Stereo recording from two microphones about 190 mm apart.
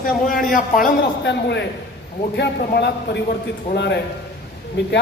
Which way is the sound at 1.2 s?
65° left (ahead or behind).